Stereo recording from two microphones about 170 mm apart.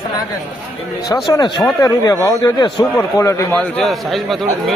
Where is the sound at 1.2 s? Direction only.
25° left (ahead or behind).